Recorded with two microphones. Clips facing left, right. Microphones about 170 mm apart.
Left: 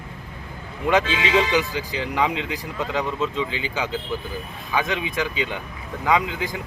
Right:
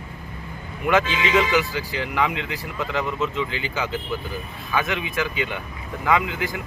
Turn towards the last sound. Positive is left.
turn(degrees=15)  # may be behind; listen again after turning